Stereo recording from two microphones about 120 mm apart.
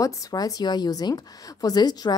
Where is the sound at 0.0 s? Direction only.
30° left (ahead or behind).